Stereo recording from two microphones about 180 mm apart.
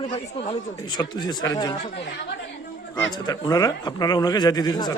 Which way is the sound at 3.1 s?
25° left (ahead or behind).